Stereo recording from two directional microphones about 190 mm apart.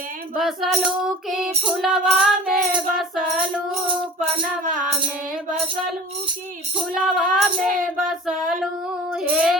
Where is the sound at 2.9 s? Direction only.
Centre (ahead or behind).